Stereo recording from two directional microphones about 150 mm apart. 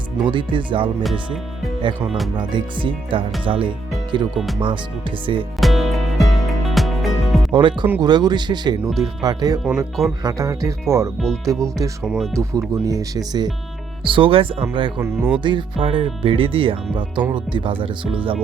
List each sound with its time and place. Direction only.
0.3 s speech: 35° right (ahead or behind)
2.3 s speech: 30° right (ahead or behind)
4.4 s speech: centre (ahead or behind)
5.2 s speech: 35° right (ahead or behind)
5.5 s music: centre (ahead or behind)
7.5 s speech: 30° right (ahead or behind)
9.6 s speech: 5° right (ahead or behind)
10.2 s speech: 20° right (ahead or behind)
12.0 s speech: centre (ahead or behind)
12.4 s speech: 20° right (ahead or behind)
15.0 s speech: 15° right (ahead or behind)
15.4 s speech: 35° right (ahead or behind)